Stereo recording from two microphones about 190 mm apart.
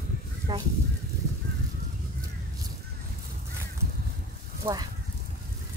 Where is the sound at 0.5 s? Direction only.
25° right (ahead or behind).